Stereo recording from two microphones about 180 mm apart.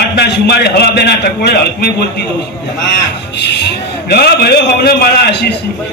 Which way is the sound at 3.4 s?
70° left (ahead or behind).